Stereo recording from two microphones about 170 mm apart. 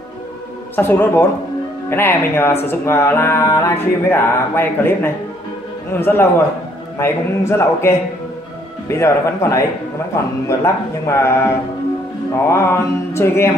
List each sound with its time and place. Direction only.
0.7 s speech: 15° left (ahead or behind)